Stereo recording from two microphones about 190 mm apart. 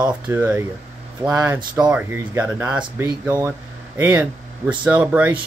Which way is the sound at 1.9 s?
10° right (ahead or behind).